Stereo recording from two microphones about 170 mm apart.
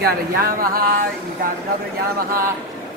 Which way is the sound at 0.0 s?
60° right (ahead or behind).